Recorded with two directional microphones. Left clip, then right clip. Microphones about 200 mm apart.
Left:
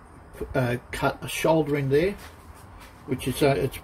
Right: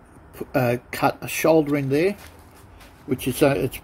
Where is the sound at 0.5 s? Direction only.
40° right (ahead or behind).